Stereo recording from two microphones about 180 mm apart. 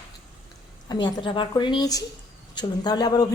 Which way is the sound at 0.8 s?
25° left (ahead or behind).